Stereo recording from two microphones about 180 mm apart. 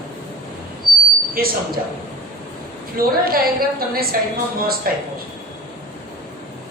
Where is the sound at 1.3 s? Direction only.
55° right (ahead or behind).